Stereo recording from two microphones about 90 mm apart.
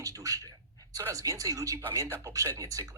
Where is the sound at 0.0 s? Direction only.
40° right (ahead or behind).